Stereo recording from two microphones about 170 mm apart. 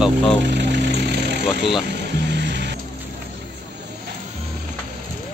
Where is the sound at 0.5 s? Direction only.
85° right.